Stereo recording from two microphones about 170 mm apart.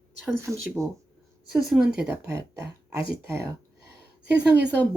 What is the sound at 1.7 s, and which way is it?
Speech, 5° right (ahead or behind).